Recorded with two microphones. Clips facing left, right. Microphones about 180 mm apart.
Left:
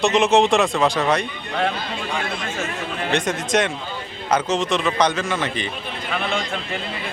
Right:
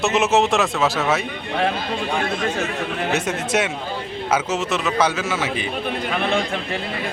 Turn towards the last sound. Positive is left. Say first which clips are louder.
# even
turn(degrees=-5)  # may be behind; listen again after turning